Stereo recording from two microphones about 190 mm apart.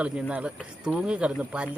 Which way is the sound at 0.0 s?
5° right (ahead or behind).